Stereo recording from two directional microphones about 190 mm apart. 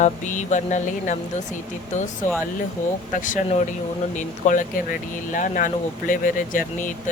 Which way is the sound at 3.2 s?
45° left (ahead or behind).